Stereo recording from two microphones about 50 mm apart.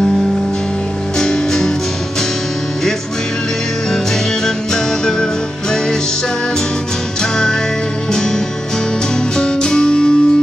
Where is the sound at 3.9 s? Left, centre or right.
Centre.